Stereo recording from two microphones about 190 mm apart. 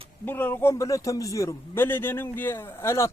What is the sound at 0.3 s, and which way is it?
A man's voice, 10° left (ahead or behind).